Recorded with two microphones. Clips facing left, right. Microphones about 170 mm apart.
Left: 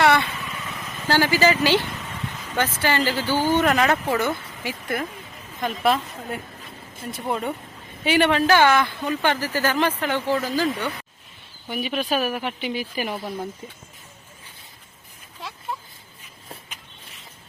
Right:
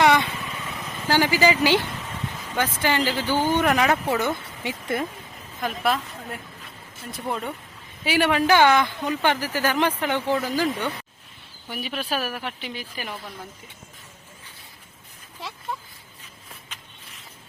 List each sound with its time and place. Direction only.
0.0 s vehicle: 15° right (ahead or behind)
1.0 s a woman's voice: 15° right (ahead or behind)
5.5 s a woman's voice: centre (ahead or behind)
8.0 s a woman's voice: 5° right (ahead or behind)
11.7 s a woman's voice: 5° left (ahead or behind)